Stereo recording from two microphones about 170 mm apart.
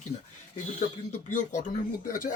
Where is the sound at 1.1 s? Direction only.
45° left (ahead or behind).